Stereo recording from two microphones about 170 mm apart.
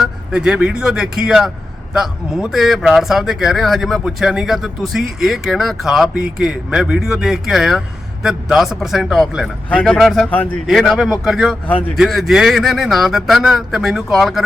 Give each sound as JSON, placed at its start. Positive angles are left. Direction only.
{"t": 0.0, "sound": "speech", "side_deg": -5}